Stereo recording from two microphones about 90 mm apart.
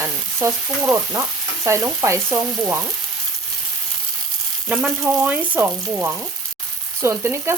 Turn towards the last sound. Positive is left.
turn(degrees=-30)  # may be behind; listen again after turning